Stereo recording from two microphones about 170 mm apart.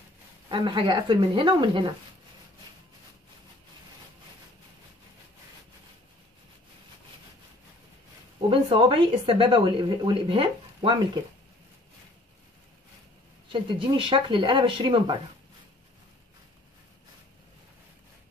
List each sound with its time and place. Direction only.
0.5 s speech: 30° right (ahead or behind)
8.4 s speech: 30° right (ahead or behind)
13.5 s speech: 30° right (ahead or behind)